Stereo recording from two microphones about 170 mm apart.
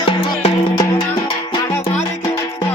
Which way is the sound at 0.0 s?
30° left (ahead or behind).